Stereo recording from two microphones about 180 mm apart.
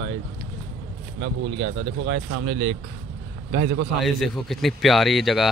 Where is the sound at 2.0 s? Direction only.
65° right (ahead or behind).